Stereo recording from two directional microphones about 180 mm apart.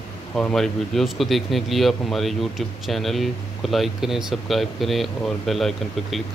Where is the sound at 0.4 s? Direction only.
5° left (ahead or behind).